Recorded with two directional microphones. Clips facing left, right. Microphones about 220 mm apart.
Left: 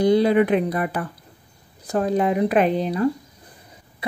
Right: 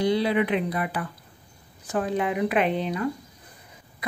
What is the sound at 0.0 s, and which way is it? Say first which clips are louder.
Speech: left 6 dB; 45° left (ahead or behind).